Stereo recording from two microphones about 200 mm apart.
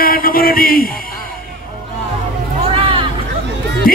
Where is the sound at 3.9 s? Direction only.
45° left (ahead or behind).